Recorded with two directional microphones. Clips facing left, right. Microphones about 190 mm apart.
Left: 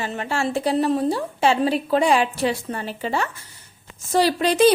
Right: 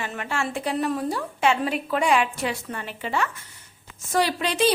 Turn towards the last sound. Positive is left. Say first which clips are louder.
# left 6 dB
turn(degrees=40)  # may be behind; listen again after turning